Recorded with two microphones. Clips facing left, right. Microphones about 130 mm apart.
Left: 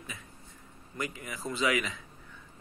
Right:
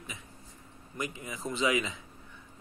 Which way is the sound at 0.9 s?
20° right (ahead or behind).